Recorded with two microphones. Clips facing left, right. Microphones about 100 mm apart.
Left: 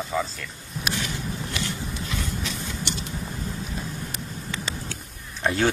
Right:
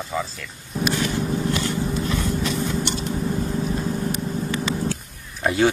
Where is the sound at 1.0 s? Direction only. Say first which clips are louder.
Right 8 dB; 40° right (ahead or behind).